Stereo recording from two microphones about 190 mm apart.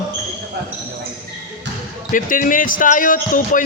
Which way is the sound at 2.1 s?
45° left (ahead or behind).